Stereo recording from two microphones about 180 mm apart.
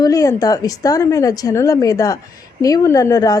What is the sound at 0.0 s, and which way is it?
A woman's voice, 20° left (ahead or behind).